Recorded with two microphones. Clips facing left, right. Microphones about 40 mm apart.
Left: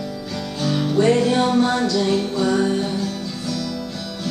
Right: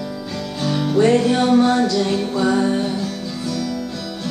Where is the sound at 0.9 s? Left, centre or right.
Centre.